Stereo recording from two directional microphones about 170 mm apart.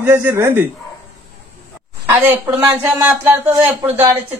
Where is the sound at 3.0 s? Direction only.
15° right (ahead or behind).